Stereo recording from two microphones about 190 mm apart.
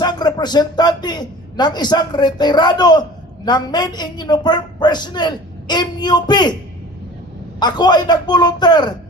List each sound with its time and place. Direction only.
0.0 s a woman's voice: 20° left (ahead or behind)
7.6 s a woman's voice: 20° left (ahead or behind)